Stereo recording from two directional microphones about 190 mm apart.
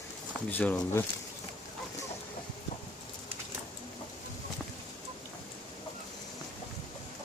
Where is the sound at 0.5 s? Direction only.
10° left (ahead or behind).